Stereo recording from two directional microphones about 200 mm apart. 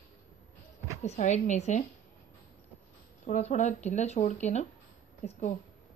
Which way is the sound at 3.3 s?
35° left (ahead or behind).